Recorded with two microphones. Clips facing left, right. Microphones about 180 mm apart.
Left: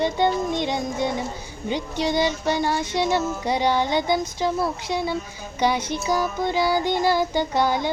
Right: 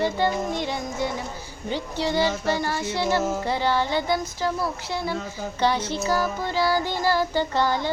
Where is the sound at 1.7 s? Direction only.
15° left (ahead or behind).